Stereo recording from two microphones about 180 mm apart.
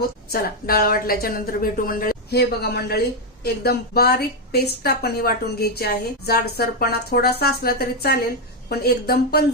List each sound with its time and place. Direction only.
0.3 s speech: 55° left (ahead or behind)